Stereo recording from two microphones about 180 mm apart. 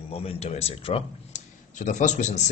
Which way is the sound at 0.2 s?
35° left (ahead or behind).